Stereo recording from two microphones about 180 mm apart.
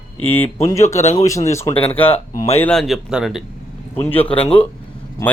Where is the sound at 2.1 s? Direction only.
35° left (ahead or behind).